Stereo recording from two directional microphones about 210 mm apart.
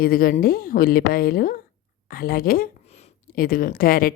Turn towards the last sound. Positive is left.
turn(degrees=45)  # may be behind; listen again after turning